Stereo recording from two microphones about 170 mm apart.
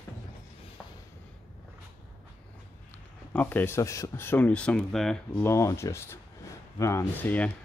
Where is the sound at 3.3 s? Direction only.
10° left (ahead or behind).